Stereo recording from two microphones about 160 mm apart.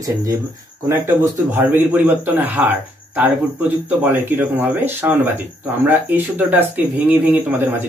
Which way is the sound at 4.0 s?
10° right (ahead or behind).